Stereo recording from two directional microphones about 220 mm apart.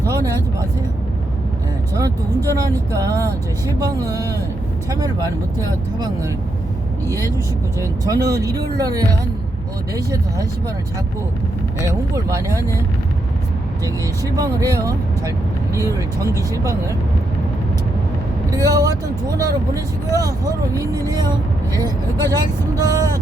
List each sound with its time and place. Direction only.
0.0 s vehicle: 15° right (ahead or behind)
2.5 s speech: 15° right (ahead or behind)
7.8 s speech: 15° right (ahead or behind)
11.9 s speech: 15° right (ahead or behind)
14.3 s speech: 15° right (ahead or behind)
18.5 s speech: 15° right (ahead or behind)